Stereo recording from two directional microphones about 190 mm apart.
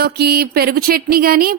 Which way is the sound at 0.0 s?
55° right (ahead or behind).